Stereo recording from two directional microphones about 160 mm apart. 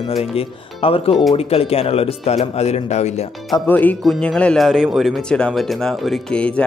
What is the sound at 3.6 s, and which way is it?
Speech, 10° left (ahead or behind).